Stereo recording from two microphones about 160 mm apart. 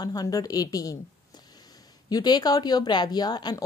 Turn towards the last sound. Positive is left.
turn(degrees=25)  # may be behind; listen again after turning